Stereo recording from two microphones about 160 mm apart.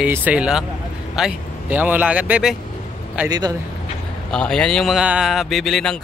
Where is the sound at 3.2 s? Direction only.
25° right (ahead or behind).